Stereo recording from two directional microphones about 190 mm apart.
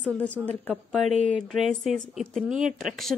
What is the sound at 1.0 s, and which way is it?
Speech, 35° right (ahead or behind).